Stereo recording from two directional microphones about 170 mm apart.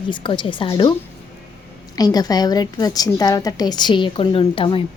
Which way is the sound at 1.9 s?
20° left (ahead or behind).